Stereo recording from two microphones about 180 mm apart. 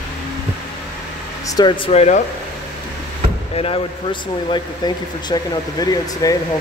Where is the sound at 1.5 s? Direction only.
25° left (ahead or behind).